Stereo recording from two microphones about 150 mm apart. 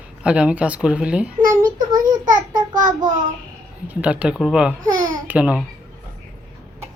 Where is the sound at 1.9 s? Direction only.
60° right (ahead or behind).